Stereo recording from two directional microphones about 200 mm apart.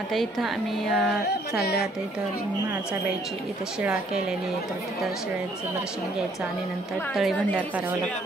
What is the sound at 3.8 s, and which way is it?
Speech, 5° right (ahead or behind).